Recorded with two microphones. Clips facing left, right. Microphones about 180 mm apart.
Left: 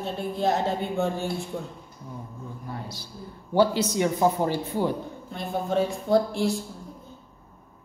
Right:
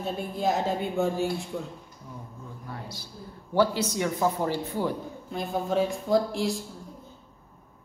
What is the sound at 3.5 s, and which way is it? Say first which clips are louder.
Speech: left 3 dB; 25° left (ahead or behind).